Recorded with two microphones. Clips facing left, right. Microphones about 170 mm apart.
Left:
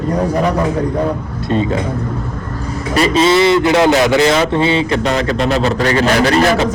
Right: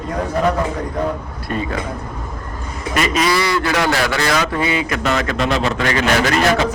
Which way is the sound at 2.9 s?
30° left (ahead or behind).